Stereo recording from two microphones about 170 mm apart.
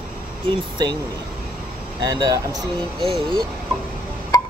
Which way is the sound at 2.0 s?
20° right (ahead or behind).